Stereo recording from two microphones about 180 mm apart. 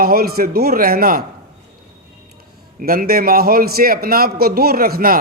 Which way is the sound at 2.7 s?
55° right (ahead or behind).